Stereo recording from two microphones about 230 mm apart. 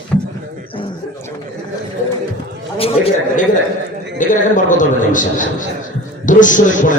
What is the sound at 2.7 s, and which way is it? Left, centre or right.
A man's voice, left.